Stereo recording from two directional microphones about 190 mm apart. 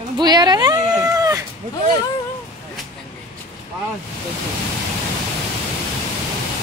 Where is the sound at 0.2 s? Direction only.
20° right (ahead or behind).